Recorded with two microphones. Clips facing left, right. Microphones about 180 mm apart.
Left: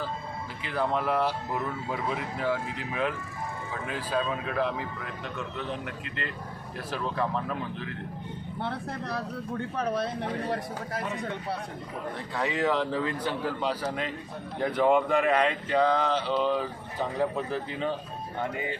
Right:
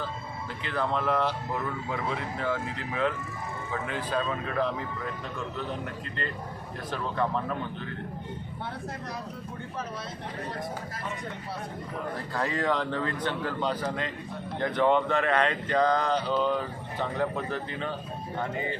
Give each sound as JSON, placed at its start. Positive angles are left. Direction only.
{"t": 0.6, "sound": "speech", "side_deg": 10}
{"t": 6.9, "sound": "speech", "side_deg": 5}
{"t": 8.6, "sound": "speech", "side_deg": 65}
{"t": 12.3, "sound": "speech", "side_deg": 0}